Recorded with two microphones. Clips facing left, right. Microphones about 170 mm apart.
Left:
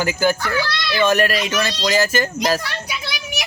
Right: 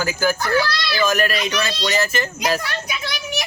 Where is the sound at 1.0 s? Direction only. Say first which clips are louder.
Left 3 dB; 30° left (ahead or behind).